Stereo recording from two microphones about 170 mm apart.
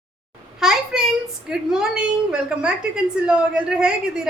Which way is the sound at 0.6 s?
5° right (ahead or behind).